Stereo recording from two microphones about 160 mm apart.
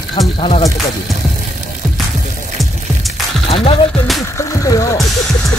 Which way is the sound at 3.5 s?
40° left (ahead or behind).